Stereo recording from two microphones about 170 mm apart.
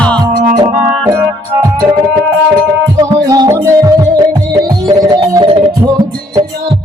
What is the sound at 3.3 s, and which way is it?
Music, 20° right (ahead or behind).